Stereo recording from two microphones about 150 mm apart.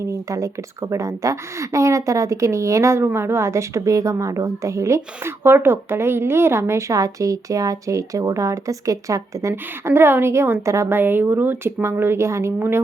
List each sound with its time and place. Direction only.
0.0 s a woman's voice: 20° right (ahead or behind)